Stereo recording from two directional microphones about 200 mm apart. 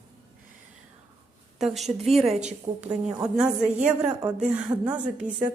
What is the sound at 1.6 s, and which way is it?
Speech, centre (ahead or behind).